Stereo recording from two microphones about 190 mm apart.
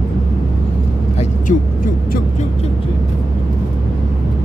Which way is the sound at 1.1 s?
45° left (ahead or behind).